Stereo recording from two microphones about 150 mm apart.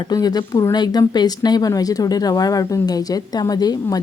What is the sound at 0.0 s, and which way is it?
A woman's voice, 25° left (ahead or behind).